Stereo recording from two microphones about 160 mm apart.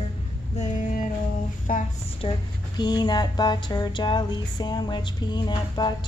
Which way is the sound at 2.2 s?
30° left (ahead or behind).